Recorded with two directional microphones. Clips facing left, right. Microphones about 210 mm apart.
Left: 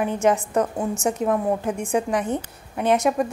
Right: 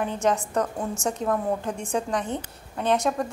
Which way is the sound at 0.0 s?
20° left (ahead or behind).